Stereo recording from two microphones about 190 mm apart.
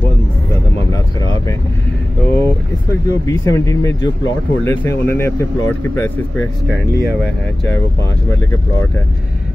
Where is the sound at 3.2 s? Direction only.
15° left (ahead or behind).